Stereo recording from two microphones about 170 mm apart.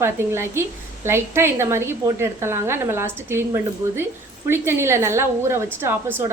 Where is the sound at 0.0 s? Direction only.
15° right (ahead or behind).